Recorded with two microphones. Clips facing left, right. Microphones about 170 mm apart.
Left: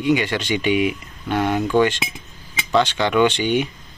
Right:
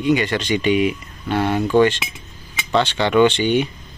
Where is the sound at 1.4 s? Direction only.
5° right (ahead or behind).